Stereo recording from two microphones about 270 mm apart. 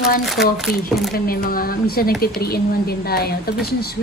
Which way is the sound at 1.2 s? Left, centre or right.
Left.